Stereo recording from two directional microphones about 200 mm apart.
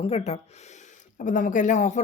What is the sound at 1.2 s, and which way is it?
Speech, 40° left (ahead or behind).